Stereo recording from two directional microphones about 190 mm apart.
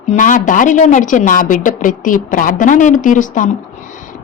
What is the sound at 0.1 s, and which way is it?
Speech, 45° left (ahead or behind).